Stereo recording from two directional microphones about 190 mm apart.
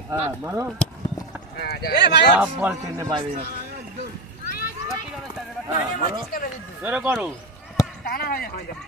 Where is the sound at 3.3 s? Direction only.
55° right (ahead or behind).